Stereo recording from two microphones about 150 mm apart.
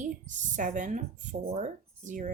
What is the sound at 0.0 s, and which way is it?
A woman's voice, 55° right (ahead or behind).